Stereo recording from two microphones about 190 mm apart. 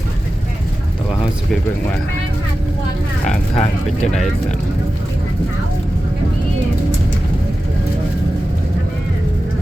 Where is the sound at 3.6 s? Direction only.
35° left (ahead or behind).